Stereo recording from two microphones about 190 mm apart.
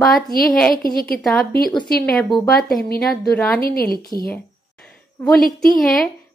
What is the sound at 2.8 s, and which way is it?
A woman's voice, 55° left (ahead or behind).